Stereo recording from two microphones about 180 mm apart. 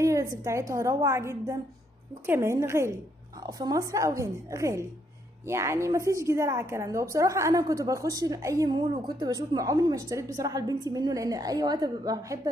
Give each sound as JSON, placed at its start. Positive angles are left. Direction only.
{"t": 0.0, "sound": "a woman's voice", "side_deg": -15}